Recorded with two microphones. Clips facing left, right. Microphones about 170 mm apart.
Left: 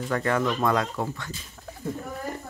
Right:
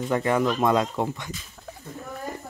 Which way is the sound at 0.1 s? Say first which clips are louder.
Right 2 dB; 15° right (ahead or behind).